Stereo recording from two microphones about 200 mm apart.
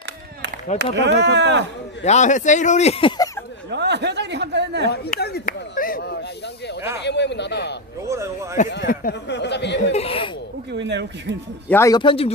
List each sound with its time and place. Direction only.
0.9 s speech: 60° right (ahead or behind)
2.0 s speech: 35° left (ahead or behind)
3.7 s speech: 60° right (ahead or behind)
4.9 s speech: 55° left (ahead or behind)
8.0 s a man's voice: 15° right (ahead or behind)
8.7 s speech: 50° left (ahead or behind)
9.9 s a man's voice: 30° left (ahead or behind)
10.7 s speech: 60° right (ahead or behind)
11.7 s a man's voice: 15° left (ahead or behind)